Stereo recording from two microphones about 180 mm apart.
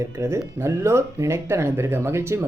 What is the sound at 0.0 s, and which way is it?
Speech, 15° right (ahead or behind).